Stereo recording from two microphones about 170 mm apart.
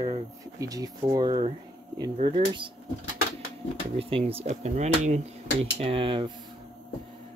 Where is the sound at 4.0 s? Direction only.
35° right (ahead or behind).